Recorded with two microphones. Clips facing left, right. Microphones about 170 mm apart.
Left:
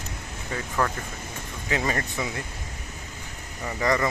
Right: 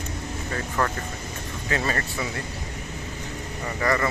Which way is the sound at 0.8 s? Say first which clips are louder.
Even; 10° left (ahead or behind).